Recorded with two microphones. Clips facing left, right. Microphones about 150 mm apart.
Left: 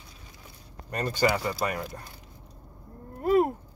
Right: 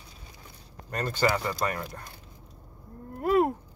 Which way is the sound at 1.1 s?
10° left (ahead or behind).